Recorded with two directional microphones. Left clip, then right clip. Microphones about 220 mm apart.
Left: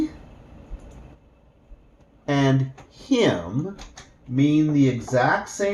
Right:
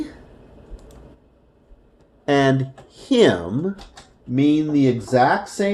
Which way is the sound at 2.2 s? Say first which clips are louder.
Right 5 dB; 40° right (ahead or behind).